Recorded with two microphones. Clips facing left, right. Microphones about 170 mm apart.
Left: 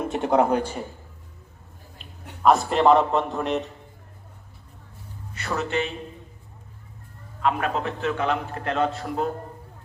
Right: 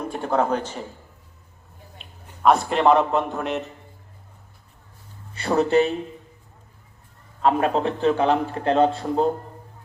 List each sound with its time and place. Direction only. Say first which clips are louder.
0.0 s a man's voice: left 2 dB; 20° left (ahead or behind)
2.4 s a man's voice: even; centre (ahead or behind)
5.3 s a man's voice: right 8 dB; 30° right (ahead or behind)
7.4 s a man's voice: right 5 dB; 30° right (ahead or behind)